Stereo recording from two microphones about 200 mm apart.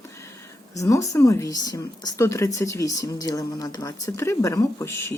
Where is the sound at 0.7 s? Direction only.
15° left (ahead or behind).